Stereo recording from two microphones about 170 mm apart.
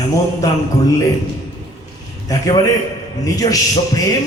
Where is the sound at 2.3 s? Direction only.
20° left (ahead or behind).